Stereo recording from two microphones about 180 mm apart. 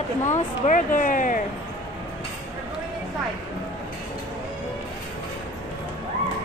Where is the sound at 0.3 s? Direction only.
45° left (ahead or behind).